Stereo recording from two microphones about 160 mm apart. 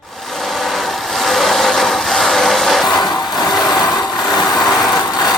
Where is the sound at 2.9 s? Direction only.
25° left (ahead or behind).